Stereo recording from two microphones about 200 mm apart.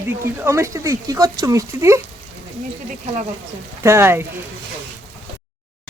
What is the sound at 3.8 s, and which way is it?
Speech, 15° right (ahead or behind).